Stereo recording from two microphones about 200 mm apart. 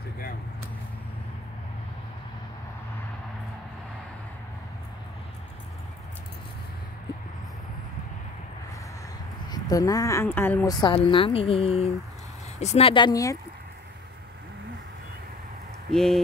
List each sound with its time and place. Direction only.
9.5 s a woman's voice: 20° left (ahead or behind)
15.9 s speech: 5° left (ahead or behind)